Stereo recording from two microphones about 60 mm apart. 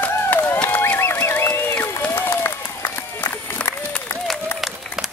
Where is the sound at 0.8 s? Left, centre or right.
Left.